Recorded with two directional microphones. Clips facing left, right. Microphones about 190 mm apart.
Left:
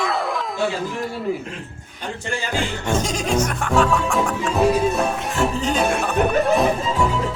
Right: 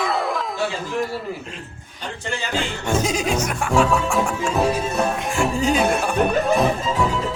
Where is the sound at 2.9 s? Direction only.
10° right (ahead or behind).